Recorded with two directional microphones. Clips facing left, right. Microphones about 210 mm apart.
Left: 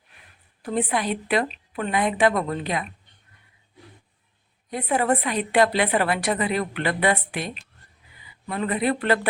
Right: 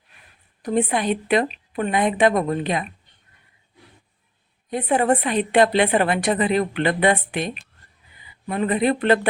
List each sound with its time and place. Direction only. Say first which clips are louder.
0.6 s a woman's voice: right 4 dB; 20° right (ahead or behind)
4.7 s a woman's voice: right 3 dB; 25° right (ahead or behind)